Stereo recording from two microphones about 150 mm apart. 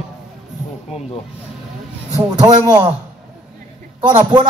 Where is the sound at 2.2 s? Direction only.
30° right (ahead or behind).